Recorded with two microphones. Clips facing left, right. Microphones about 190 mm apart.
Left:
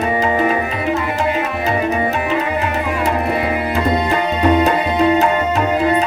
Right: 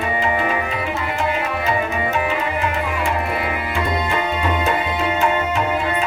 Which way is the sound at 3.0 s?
40° left (ahead or behind).